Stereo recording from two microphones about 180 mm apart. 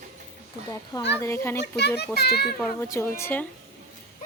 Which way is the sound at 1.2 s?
15° left (ahead or behind).